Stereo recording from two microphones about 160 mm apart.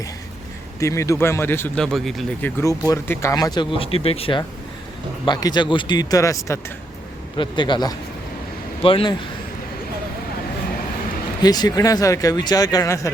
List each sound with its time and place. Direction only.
0.8 s speech: 20° left (ahead or behind); by 2.5 s centre (ahead or behind)
2.6 s speech: 20° left (ahead or behind)
11.4 s speech: 25° left (ahead or behind)